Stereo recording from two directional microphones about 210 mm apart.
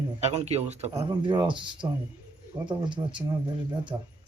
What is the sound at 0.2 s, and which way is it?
Speech, 30° right (ahead or behind).